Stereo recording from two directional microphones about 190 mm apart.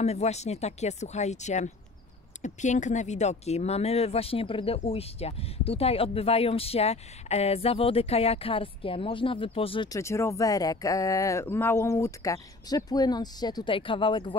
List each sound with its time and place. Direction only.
0.0 s speech: 35° left (ahead or behind)